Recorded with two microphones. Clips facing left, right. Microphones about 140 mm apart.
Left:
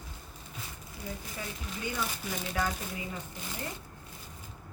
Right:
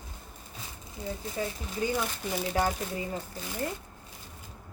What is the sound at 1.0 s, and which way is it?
Speech, 35° right (ahead or behind).